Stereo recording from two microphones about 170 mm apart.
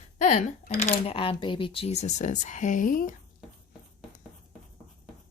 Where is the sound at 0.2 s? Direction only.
45° left (ahead or behind).